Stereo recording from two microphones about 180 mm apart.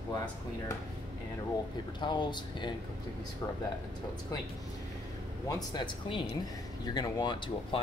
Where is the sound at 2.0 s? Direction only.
25° left (ahead or behind).